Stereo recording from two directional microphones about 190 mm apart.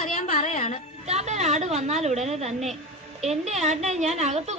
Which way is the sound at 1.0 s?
35° right (ahead or behind).